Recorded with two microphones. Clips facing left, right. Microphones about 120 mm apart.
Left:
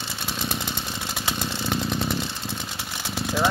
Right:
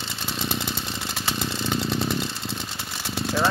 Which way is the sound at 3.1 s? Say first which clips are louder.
Even; 10° left (ahead or behind).